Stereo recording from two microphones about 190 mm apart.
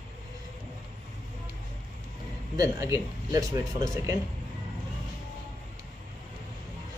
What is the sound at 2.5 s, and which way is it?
Speech, 15° right (ahead or behind).